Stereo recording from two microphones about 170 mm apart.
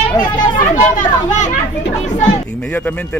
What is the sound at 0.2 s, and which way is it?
Speech, 25° left (ahead or behind).